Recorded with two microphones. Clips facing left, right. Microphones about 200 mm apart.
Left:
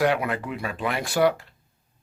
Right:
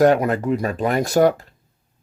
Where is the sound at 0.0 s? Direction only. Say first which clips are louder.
Right 8 dB; 40° right (ahead or behind).